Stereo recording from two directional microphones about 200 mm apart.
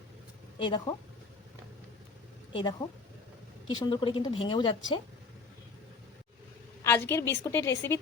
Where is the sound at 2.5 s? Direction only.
25° left (ahead or behind).